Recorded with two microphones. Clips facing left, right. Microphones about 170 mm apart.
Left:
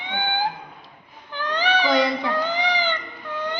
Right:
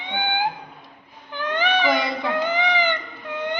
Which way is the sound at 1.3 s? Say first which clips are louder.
Right 1 dB; 20° right (ahead or behind).